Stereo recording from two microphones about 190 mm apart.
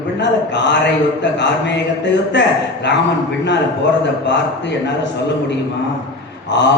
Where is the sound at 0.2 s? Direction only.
65° left (ahead or behind).